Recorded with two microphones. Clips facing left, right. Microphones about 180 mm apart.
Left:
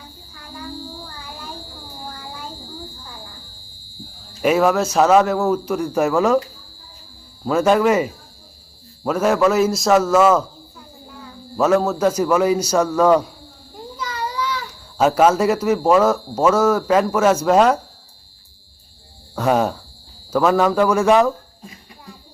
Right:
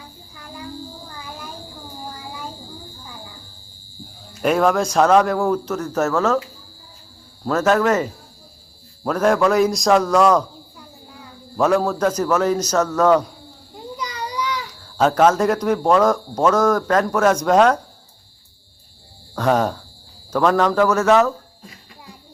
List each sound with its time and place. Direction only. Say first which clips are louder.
4.4 s a man's voice: left 1 dB; 5° left (ahead or behind)
7.4 s a man's voice: left 2 dB; 10° left (ahead or behind)
11.5 s speech: left 1 dB; 5° left (ahead or behind)
13.9 s a sound: left 1 dB; 15° right (ahead or behind)
14.9 s speech: left 1 dB; 10° left (ahead or behind)
19.4 s speech: even; 10° left (ahead or behind)